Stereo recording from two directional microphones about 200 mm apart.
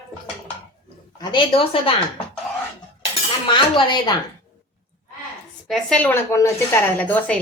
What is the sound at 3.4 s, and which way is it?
Speech, 25° left (ahead or behind).